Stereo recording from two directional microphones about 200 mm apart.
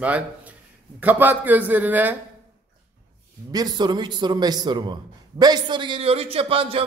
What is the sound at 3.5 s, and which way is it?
A man's voice, 20° right (ahead or behind).